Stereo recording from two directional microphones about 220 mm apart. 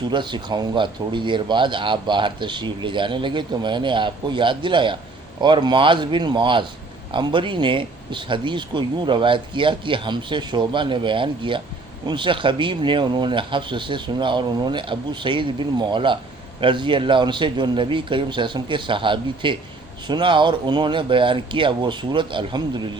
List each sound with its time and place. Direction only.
0.1 s speech: 20° right (ahead or behind)